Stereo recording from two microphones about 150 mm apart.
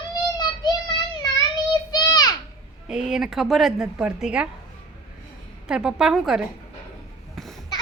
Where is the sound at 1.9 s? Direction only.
25° left (ahead or behind).